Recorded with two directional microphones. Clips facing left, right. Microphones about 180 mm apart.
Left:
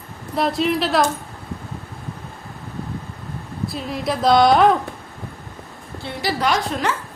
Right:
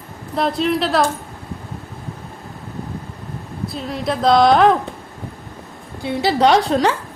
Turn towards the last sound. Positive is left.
turn(degrees=-35)  # may be behind; listen again after turning